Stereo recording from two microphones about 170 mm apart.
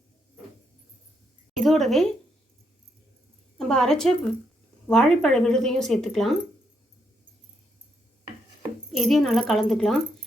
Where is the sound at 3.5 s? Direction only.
5° left (ahead or behind).